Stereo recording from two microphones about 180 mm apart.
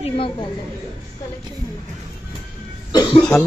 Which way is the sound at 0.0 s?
30° left (ahead or behind).